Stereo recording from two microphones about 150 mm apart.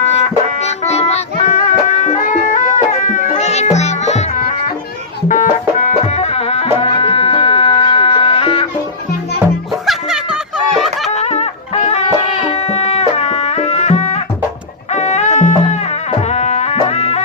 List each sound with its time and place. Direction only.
0.0 s music: 45° left (ahead or behind)
11.1 s music: 45° left (ahead or behind)